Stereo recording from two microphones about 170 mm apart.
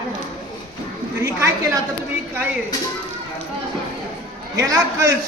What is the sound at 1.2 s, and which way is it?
Speech, 15° right (ahead or behind).